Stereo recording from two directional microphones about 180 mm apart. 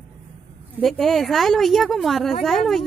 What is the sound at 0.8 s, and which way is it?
A child's voice, centre (ahead or behind).